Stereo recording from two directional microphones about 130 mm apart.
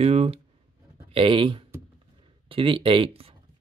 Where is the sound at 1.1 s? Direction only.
40° right (ahead or behind).